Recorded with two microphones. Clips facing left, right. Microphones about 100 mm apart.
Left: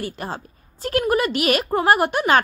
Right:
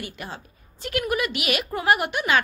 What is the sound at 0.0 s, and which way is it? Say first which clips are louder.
A woman's voice: left 6 dB; 40° left (ahead or behind).